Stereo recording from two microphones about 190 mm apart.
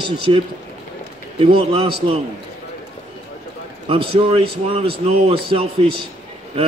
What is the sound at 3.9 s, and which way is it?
A man's voice, 25° right (ahead or behind).